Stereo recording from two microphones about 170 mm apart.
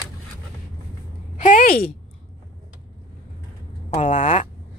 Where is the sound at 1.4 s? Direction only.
55° left (ahead or behind).